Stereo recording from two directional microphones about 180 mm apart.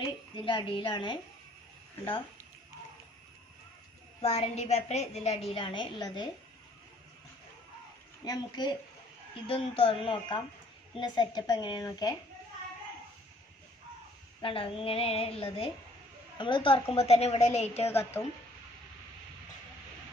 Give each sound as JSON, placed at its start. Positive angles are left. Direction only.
{"t": 0.0, "sound": "speech", "side_deg": 25}
{"t": 4.2, "sound": "a woman's voice", "side_deg": 35}
{"t": 8.3, "sound": "speech", "side_deg": 25}
{"t": 14.4, "sound": "a woman's voice", "side_deg": 30}
{"t": 17.8, "sound": "a woman's voice", "side_deg": 15}